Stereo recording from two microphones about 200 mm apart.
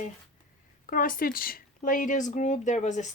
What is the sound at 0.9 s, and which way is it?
Speech, 45° left (ahead or behind).